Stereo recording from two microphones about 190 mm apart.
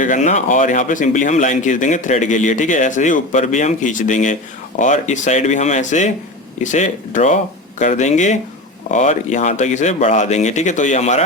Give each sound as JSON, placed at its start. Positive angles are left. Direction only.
{"t": 0.0, "sound": "a man's voice", "side_deg": 40}